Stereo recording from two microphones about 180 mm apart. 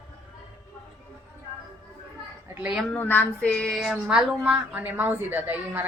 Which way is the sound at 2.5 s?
5° right (ahead or behind).